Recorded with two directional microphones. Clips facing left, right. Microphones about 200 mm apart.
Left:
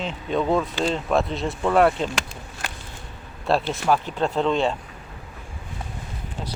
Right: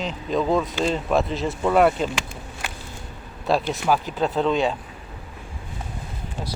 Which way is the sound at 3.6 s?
5° right (ahead or behind).